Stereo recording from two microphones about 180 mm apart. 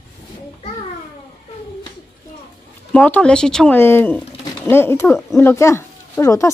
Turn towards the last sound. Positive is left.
turn(degrees=15)  # may be behind; listen again after turning